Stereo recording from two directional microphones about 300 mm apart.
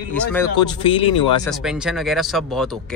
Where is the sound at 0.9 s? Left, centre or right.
Centre.